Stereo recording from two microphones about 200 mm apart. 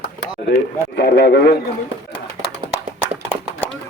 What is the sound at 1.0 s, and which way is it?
Speech, 55° left (ahead or behind).